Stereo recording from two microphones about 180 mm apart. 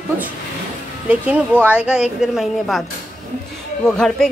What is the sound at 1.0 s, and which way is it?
A woman's voice, 10° right (ahead or behind).